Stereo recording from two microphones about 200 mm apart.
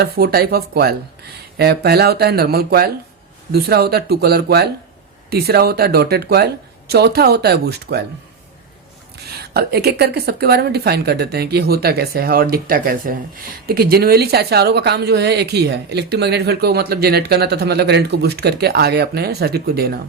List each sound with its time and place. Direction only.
0.0 s a woman's voice: 50° right (ahead or behind)
9.2 s a woman's voice: 55° right (ahead or behind)